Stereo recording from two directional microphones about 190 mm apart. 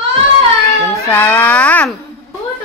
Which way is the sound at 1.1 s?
10° left (ahead or behind).